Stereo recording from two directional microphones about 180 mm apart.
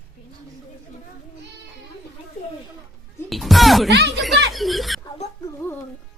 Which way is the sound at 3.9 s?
70° right (ahead or behind).